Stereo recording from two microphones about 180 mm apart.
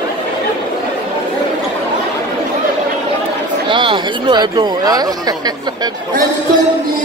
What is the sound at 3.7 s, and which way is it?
Speech, 25° right (ahead or behind).